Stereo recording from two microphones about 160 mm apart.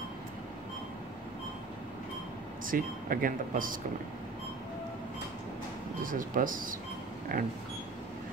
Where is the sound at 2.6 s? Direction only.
60° right (ahead or behind).